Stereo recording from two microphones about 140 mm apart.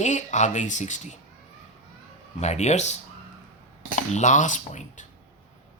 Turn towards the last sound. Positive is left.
turn(degrees=60)  # may be behind; listen again after turning